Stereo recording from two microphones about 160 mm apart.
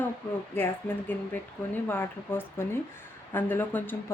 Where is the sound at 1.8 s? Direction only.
15° left (ahead or behind).